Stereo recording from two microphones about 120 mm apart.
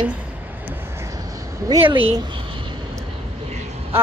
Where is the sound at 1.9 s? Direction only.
45° right (ahead or behind).